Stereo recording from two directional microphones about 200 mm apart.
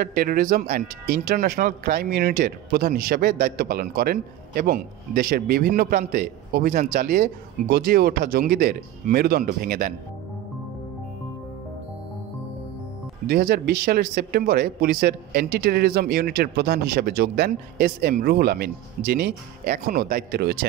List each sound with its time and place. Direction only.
0.0 s speech: 50° right (ahead or behind)
13.3 s speech: 50° right (ahead or behind)